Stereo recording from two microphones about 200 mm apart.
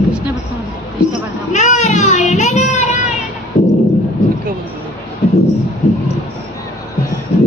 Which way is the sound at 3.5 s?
35° left (ahead or behind).